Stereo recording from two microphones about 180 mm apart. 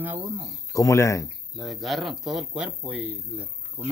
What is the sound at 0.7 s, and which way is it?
Speech, 20° left (ahead or behind).